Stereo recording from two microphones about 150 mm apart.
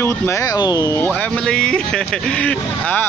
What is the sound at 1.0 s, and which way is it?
Speech, 10° left (ahead or behind).